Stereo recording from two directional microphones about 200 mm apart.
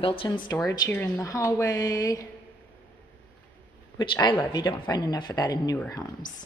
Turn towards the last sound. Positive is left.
turn(degrees=15)  # may be behind; listen again after turning